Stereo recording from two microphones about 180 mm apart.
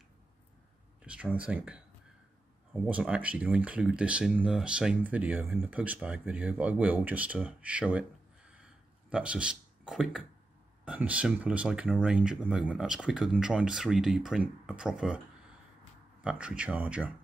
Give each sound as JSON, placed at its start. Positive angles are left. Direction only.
{"t": 1.0, "sound": "speech", "side_deg": -5}
{"t": 8.5, "sound": "a sound", "side_deg": -5}
{"t": 10.9, "sound": "speech", "side_deg": -5}